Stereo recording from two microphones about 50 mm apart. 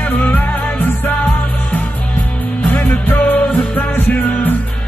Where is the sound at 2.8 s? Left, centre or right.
Left.